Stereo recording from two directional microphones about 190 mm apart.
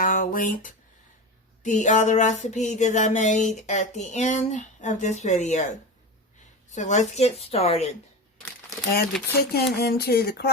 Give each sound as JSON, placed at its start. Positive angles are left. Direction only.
{"t": 0.0, "sound": "speech", "side_deg": 45}
{"t": 1.6, "sound": "a sound", "side_deg": 40}
{"t": 9.4, "sound": "speech", "side_deg": 55}